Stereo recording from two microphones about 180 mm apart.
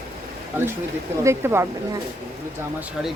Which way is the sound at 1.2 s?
15° right (ahead or behind).